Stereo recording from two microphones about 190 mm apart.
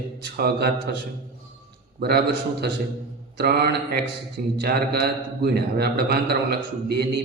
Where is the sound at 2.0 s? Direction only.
55° right (ahead or behind).